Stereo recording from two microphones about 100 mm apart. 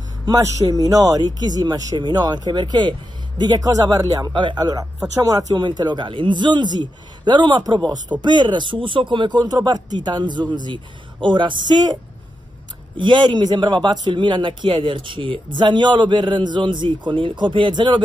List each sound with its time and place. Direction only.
0.2 s speech: 35° right (ahead or behind)
4.3 s a man's voice: 55° right (ahead or behind)
9.4 s a man's voice: 40° right (ahead or behind)